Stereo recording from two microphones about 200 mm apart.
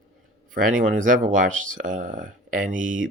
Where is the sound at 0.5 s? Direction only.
40° right (ahead or behind).